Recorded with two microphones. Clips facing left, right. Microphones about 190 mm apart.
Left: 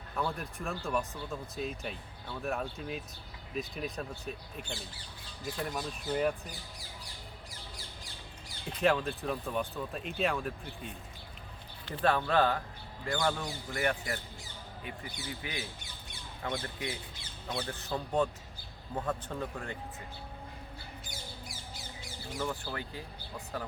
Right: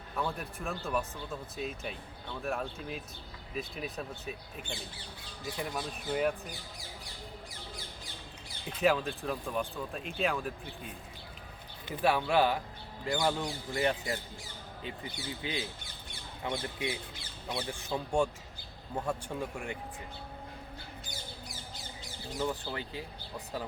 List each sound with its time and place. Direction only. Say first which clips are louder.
0.2 s speech: even; centre (ahead or behind)
8.6 s a man's voice: even; centre (ahead or behind); by 17.0 s 20° right (ahead or behind)
17.5 s a man's voice: even; 10° right (ahead or behind)
22.4 s speech: right 2 dB; 20° right (ahead or behind)